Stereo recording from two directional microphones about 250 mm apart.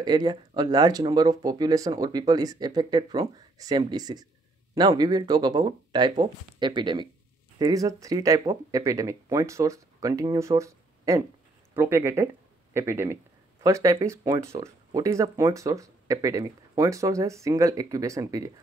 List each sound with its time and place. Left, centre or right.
0.0 s speech: centre